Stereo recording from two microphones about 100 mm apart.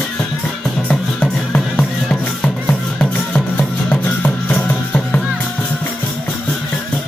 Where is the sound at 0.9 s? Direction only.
10° left (ahead or behind).